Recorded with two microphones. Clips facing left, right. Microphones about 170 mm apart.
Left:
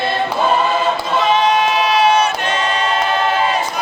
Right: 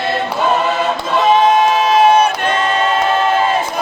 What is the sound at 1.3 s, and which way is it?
Choir, 45° right (ahead or behind).